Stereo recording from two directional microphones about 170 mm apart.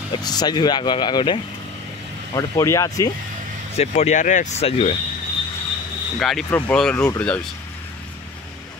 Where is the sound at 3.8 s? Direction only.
40° left (ahead or behind).